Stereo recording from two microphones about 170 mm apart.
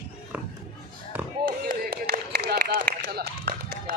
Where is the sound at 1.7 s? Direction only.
65° right (ahead or behind).